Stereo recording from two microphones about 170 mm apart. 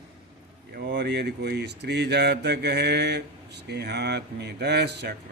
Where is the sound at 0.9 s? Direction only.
75° right (ahead or behind).